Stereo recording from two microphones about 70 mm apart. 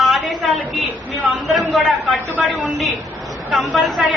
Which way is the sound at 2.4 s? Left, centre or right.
Centre.